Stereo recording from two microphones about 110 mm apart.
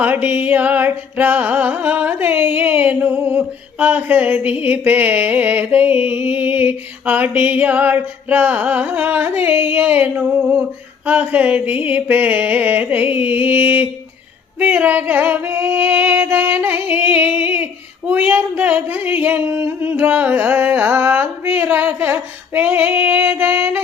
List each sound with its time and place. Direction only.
0.0 s music: 15° right (ahead or behind)